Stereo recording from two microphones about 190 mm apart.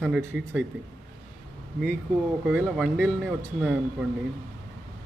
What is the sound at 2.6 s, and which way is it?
Speech, centre (ahead or behind).